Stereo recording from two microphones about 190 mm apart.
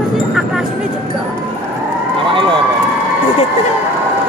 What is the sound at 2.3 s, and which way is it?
Run, 25° right (ahead or behind).